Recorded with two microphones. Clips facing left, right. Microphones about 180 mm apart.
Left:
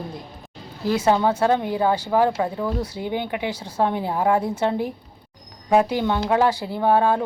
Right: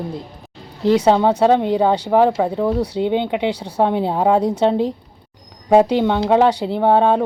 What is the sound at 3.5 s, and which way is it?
Speech, 65° right (ahead or behind).